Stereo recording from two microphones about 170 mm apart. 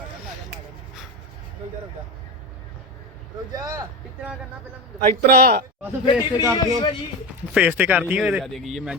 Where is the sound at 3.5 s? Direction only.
20° right (ahead or behind).